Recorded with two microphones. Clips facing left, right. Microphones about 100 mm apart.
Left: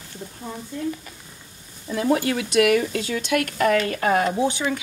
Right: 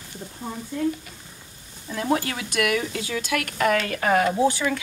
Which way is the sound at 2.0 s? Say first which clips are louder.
Left 3 dB; 45° right (ahead or behind).